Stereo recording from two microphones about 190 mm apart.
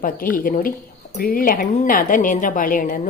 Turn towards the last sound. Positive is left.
turn(degrees=45)  # may be behind; listen again after turning